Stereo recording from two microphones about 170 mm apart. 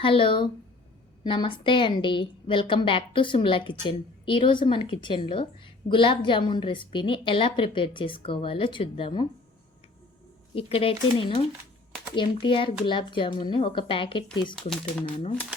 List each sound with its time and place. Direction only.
0.0 s a woman's voice: 30° left (ahead or behind)
10.5 s a woman's voice: 35° left (ahead or behind)
14.5 s speech: centre (ahead or behind)